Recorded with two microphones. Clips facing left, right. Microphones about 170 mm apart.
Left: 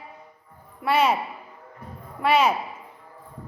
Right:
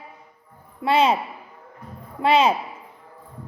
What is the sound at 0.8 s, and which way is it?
Speech, 20° right (ahead or behind).